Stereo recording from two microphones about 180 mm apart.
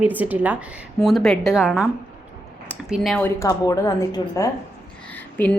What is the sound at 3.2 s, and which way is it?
A woman's voice, 15° left (ahead or behind).